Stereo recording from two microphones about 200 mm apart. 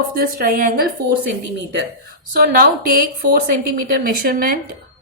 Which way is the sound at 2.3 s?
45° right (ahead or behind).